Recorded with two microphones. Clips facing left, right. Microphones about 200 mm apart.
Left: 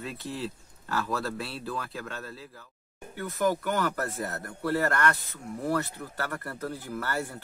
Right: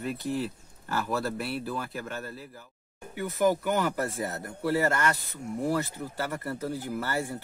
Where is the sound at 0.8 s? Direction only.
15° right (ahead or behind).